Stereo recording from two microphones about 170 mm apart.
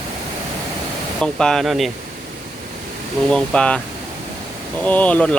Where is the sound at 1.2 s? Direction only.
5° left (ahead or behind).